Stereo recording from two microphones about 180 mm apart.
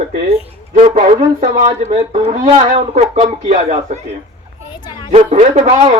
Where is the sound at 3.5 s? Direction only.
35° right (ahead or behind).